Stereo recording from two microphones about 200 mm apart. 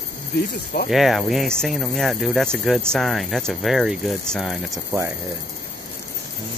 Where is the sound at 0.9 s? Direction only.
Centre (ahead or behind).